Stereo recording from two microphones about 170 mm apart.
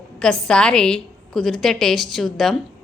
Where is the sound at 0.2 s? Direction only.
5° left (ahead or behind).